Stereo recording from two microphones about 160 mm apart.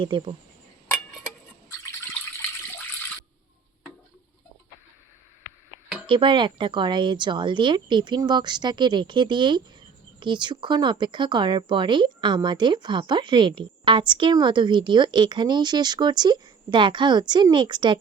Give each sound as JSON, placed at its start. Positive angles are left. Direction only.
{"t": 0.0, "sound": "speech", "side_deg": -30}
{"t": 6.1, "sound": "speech", "side_deg": -30}